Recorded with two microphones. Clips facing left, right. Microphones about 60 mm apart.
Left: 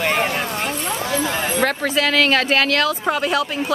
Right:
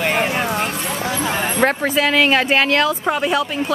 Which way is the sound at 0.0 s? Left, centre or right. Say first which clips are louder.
Right 1 dB; centre.